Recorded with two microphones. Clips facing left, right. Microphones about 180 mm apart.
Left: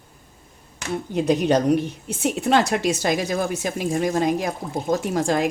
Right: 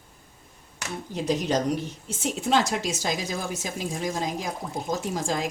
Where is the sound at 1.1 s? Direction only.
60° left (ahead or behind).